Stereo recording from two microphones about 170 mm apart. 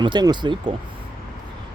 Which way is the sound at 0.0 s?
25° right (ahead or behind).